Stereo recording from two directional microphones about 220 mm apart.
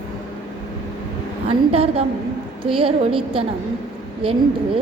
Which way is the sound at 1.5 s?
25° right (ahead or behind).